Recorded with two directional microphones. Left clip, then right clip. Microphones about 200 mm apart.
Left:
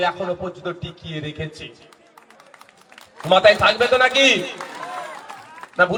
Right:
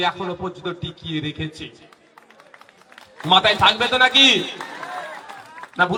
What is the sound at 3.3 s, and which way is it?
A man's voice, 35° left (ahead or behind).